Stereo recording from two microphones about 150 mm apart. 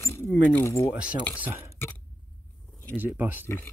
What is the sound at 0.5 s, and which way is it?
Speech, 20° left (ahead or behind).